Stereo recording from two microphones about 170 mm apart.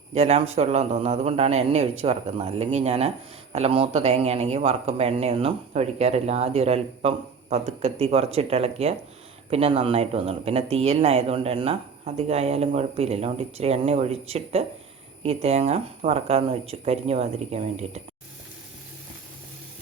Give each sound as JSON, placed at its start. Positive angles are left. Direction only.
{"t": 0.1, "sound": "speech", "side_deg": -40}